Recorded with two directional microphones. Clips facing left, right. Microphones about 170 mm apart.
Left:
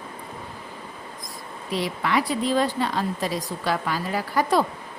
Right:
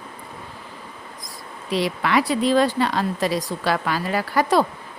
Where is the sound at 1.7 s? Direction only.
80° right.